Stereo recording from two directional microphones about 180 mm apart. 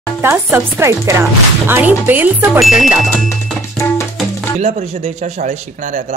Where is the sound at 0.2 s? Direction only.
15° right (ahead or behind).